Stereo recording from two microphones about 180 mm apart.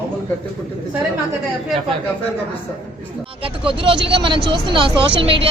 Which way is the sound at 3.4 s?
30° right (ahead or behind).